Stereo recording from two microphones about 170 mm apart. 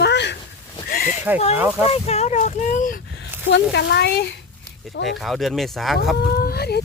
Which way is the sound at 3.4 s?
90° left.